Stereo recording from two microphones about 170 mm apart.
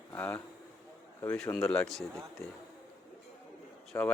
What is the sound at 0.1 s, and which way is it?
Speech, 10° left (ahead or behind).